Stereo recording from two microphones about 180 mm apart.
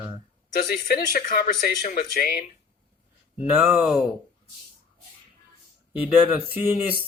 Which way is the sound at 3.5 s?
10° right (ahead or behind).